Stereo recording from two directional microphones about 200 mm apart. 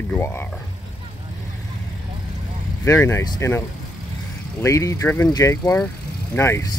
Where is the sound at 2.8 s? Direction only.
15° left (ahead or behind).